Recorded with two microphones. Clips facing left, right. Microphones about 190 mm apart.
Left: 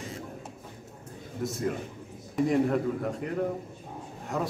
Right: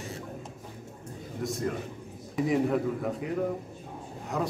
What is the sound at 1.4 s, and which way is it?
A man's voice, centre (ahead or behind).